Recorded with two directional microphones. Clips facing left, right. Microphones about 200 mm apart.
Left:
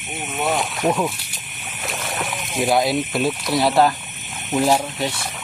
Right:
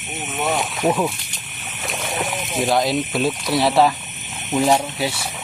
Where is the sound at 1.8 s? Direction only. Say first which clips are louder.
Right 2 dB; centre (ahead or behind).